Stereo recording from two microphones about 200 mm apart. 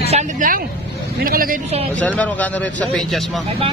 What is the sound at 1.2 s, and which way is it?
Speech, 45° right (ahead or behind).